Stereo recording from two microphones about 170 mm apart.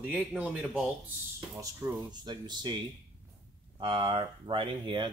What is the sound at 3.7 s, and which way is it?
Speech, 30° right (ahead or behind).